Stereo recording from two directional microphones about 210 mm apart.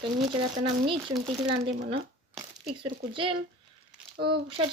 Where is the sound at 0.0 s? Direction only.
25° right (ahead or behind).